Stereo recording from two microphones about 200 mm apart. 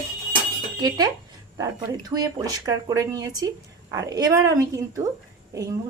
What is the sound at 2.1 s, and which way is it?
A woman's voice, 20° right (ahead or behind).